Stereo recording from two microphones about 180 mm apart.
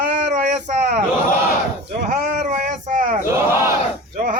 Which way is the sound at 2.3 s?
45° right (ahead or behind).